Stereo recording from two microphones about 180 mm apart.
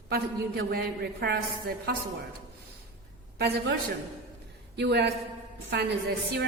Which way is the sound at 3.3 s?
70° right (ahead or behind).